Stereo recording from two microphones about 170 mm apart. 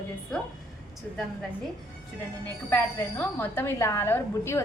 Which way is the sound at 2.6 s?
10° left (ahead or behind).